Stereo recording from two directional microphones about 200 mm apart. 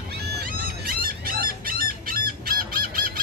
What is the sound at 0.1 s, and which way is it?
Fowl, 50° right (ahead or behind).